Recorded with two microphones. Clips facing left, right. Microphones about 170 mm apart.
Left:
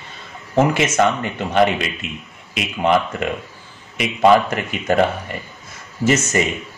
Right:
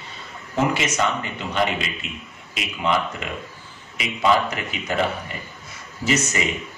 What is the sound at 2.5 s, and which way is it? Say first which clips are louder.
Speech: left 6 dB; 50° left (ahead or behind).